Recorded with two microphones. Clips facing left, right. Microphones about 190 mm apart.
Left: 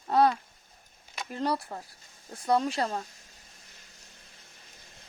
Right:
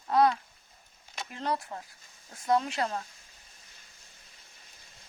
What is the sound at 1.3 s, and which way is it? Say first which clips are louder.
Speech: left 3 dB; 35° left (ahead or behind).